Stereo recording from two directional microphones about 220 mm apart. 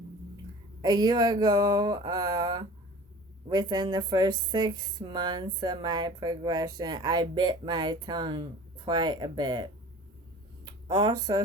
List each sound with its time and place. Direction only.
0.8 s a woman's voice: 20° right (ahead or behind)